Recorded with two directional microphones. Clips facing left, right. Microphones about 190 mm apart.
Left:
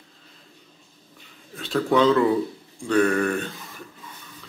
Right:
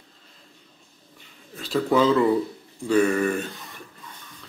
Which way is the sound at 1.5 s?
Centre (ahead or behind).